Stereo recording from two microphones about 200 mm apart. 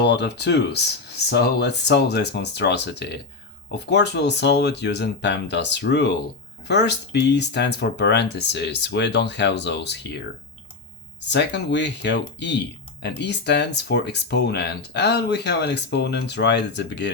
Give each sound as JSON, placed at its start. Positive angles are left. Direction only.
{"t": 0.0, "sound": "speech", "side_deg": 60}
{"t": 11.3, "sound": "speech", "side_deg": 60}